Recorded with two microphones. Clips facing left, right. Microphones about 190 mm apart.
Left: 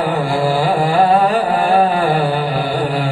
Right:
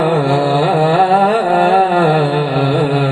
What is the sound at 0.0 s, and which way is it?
Carnatic music, 70° right (ahead or behind).